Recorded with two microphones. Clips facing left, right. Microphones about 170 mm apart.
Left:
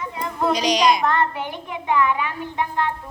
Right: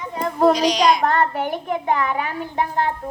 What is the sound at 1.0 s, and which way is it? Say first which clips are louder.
A child's voice: right 2 dB; 40° right (ahead or behind).